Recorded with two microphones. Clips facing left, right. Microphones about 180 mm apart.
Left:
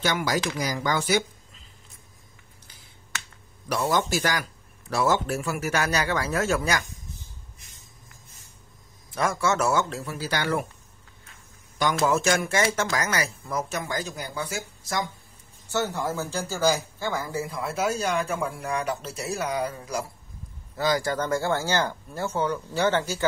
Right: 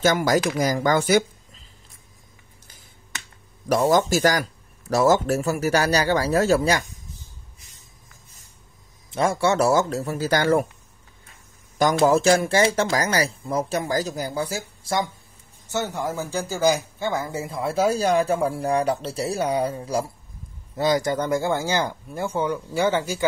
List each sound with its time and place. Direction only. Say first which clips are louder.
0.0 s speech: right 6 dB; 45° right (ahead or behind)
3.6 s speech: right 6 dB; 45° right (ahead or behind)
9.1 s speech: right 4 dB; 30° right (ahead or behind); by 10.7 s 45° right (ahead or behind)
12.0 s speech: right 6 dB; 30° right (ahead or behind)
15.7 s speech: right 1 dB; 15° right (ahead or behind)